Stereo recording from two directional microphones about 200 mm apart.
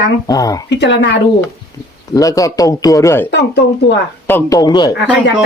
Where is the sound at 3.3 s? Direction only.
60° left (ahead or behind).